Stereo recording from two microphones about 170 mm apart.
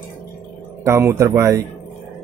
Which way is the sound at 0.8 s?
15° right (ahead or behind).